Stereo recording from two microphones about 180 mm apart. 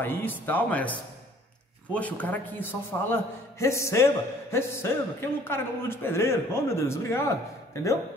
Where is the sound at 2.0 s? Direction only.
10° left (ahead or behind).